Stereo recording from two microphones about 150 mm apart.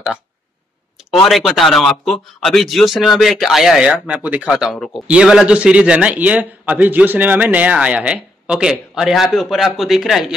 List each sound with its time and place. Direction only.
1.2 s a man's voice: centre (ahead or behind)